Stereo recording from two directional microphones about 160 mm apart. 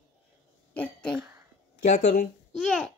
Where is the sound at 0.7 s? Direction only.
5° left (ahead or behind).